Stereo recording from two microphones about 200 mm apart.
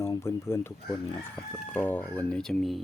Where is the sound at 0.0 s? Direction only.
15° left (ahead or behind).